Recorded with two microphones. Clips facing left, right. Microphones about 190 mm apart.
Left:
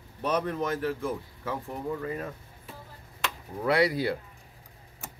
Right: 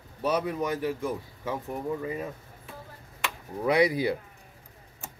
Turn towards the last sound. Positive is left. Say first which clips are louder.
# right 1 dB
turn(degrees=-15)  # may be behind; listen again after turning